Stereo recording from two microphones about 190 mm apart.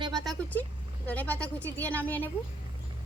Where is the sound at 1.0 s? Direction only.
10° left (ahead or behind).